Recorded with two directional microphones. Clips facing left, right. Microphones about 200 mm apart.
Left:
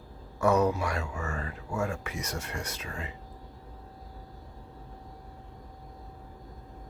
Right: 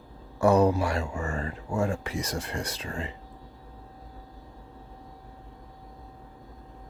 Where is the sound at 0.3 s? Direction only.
30° right (ahead or behind).